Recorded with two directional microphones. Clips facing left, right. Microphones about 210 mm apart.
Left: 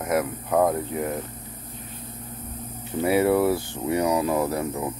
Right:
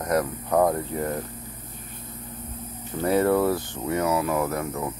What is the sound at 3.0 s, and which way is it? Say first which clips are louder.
Speech: left 1 dB; 10° left (ahead or behind).